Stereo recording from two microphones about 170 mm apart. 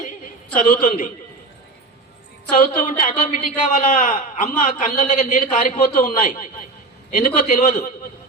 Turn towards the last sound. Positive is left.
turn(degrees=55)  # may be behind; listen again after turning